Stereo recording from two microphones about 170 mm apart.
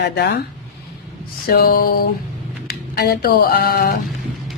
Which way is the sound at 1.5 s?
65° left (ahead or behind).